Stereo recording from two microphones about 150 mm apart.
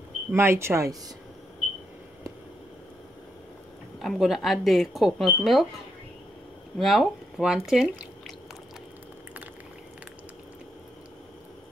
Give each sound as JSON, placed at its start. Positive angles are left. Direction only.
{"t": 0.3, "sound": "speech", "side_deg": -15}
{"t": 4.0, "sound": "speech", "side_deg": 0}
{"t": 6.8, "sound": "speech", "side_deg": 0}